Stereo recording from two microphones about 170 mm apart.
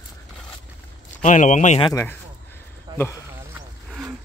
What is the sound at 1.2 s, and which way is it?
Speech, 45° left (ahead or behind).